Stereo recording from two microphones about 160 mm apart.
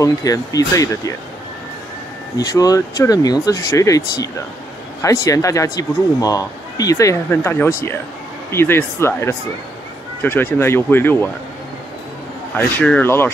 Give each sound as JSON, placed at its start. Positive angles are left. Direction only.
{"t": 0.0, "sound": "speech", "side_deg": 20}
{"t": 2.3, "sound": "speech", "side_deg": 25}
{"t": 12.5, "sound": "speech", "side_deg": 10}